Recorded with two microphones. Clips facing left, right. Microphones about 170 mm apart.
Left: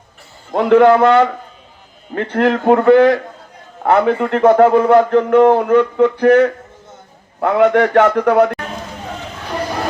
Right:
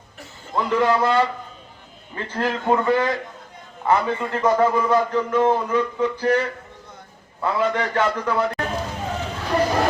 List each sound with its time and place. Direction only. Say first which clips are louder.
0.5 s a man's voice: left 10 dB; 70° left (ahead or behind)